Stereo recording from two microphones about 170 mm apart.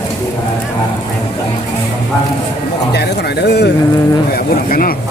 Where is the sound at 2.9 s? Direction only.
75° left (ahead or behind).